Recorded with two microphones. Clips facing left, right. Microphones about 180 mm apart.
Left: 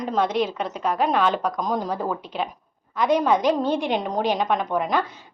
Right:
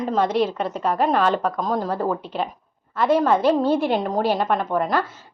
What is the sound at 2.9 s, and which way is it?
Speech, 15° left (ahead or behind).